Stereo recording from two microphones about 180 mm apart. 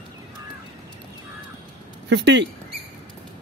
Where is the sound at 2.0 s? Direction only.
80° right.